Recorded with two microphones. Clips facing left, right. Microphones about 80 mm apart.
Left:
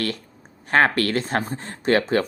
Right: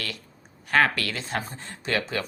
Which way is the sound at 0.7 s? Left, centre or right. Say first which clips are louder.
Left 4 dB; left.